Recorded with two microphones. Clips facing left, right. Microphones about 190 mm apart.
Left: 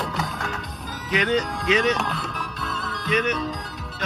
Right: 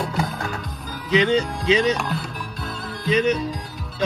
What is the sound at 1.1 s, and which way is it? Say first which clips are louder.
Music: right 4 dB; 30° right (ahead or behind).